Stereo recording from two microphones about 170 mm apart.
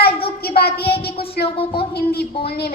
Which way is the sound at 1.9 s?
70° left (ahead or behind).